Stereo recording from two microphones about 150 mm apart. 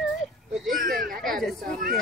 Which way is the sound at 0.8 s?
70° right (ahead or behind).